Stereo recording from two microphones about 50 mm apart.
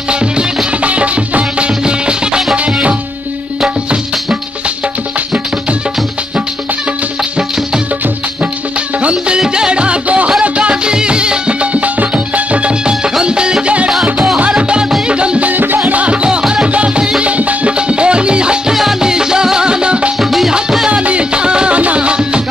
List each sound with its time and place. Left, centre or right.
0.1 s music: centre
9.0 s music: right
15.5 s music: right
16.0 s music: right
18.7 s music: centre
20.2 s music: centre
20.9 s music: right